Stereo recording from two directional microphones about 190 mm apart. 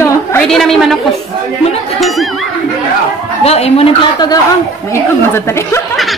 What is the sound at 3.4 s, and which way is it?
Speech, 35° left (ahead or behind).